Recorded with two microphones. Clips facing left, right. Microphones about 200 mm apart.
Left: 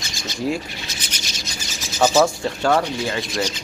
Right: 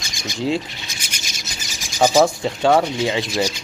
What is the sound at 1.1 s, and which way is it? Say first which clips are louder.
Bird: left 2 dB; 10° right (ahead or behind).